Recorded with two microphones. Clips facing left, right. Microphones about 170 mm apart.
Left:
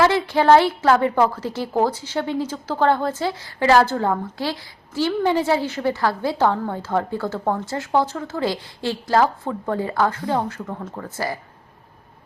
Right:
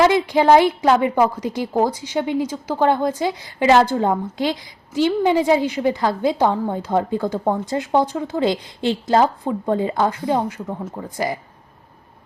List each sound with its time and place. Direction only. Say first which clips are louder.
0.0 s a woman's voice: right 2 dB; 15° right (ahead or behind)